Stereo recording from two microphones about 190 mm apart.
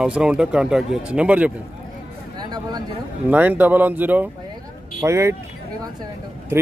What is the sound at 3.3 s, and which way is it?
Speech, 10° right (ahead or behind).